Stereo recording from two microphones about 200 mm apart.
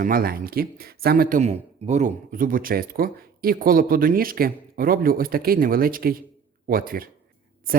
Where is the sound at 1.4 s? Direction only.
35° right (ahead or behind).